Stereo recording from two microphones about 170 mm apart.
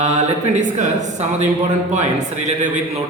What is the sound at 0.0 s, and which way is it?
Speech, 45° right (ahead or behind).